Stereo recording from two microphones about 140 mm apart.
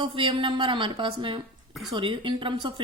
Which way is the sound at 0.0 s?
35° right (ahead or behind).